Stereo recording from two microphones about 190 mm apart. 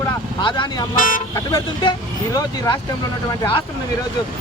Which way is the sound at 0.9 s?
45° left (ahead or behind).